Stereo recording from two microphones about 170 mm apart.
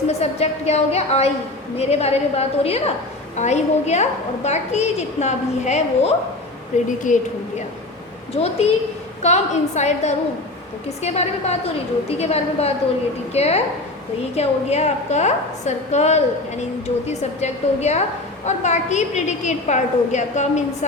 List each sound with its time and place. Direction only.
0.1 s a woman's voice: 40° left (ahead or behind)
8.3 s a woman's voice: 35° left (ahead or behind)